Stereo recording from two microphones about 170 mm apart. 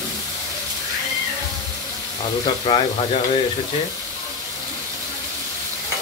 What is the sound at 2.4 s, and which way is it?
Speech, 30° left (ahead or behind).